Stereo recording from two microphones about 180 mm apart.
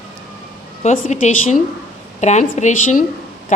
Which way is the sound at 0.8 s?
40° left (ahead or behind).